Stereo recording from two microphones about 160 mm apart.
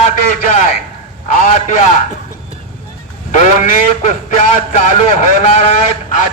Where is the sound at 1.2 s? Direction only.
50° left (ahead or behind).